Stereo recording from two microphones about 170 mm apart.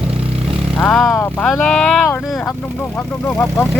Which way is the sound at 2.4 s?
15° left (ahead or behind).